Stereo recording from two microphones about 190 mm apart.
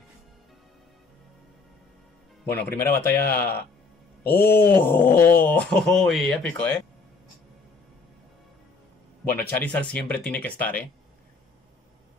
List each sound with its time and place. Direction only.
2.5 s speech: 10° left (ahead or behind)
3.1 s speech: 50° left (ahead or behind)
4.2 s speech: 10° left (ahead or behind)
9.4 s speech: 10° left (ahead or behind)